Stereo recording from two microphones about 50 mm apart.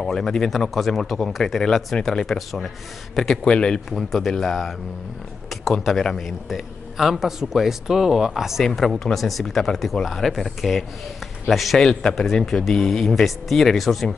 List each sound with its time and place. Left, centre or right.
0.0 s a man's voice: centre
3.4 s a man's voice: centre
3.9 s a man's voice: centre